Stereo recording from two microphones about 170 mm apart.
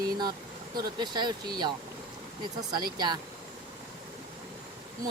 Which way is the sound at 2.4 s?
25° right (ahead or behind).